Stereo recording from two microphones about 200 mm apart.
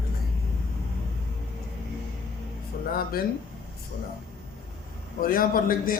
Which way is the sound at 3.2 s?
45° left (ahead or behind).